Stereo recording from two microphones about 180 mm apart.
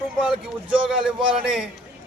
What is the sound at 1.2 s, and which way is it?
Speech, 5° right (ahead or behind).